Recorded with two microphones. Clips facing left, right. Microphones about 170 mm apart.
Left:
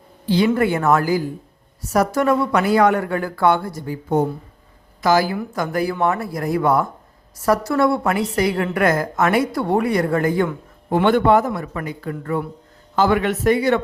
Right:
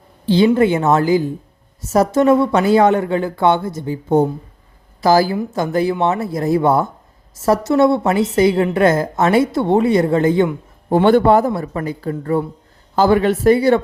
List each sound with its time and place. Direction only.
0.3 s a woman's voice: 25° right (ahead or behind)